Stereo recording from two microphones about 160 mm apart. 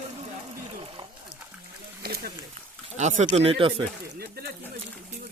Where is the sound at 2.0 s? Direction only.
70° right (ahead or behind).